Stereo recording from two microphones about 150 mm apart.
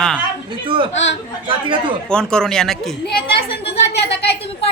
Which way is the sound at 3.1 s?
90° left.